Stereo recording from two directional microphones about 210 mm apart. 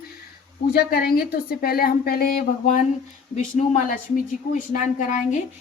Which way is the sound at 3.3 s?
35° left (ahead or behind).